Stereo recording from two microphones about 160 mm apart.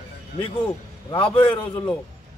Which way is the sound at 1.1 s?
35° left (ahead or behind).